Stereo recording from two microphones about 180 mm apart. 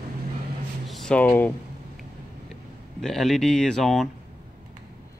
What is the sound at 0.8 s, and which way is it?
Speech, centre (ahead or behind).